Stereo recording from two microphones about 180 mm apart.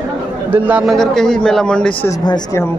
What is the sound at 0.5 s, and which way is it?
Speech, 10° right (ahead or behind).